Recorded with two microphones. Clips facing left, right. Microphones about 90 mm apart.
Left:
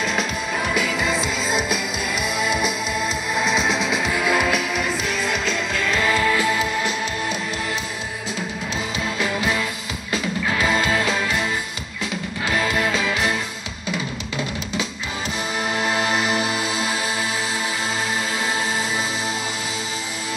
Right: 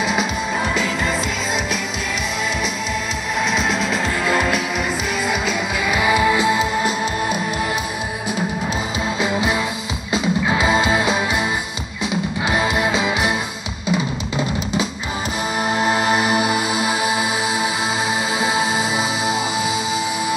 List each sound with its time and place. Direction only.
0.0 s music: 10° right (ahead or behind)
3.3 s music: centre (ahead or behind); by 6.7 s 20° right (ahead or behind)
9.2 s music: 20° right (ahead or behind)
15.7 s music: 20° right (ahead or behind)
18.4 s music: 15° right (ahead or behind)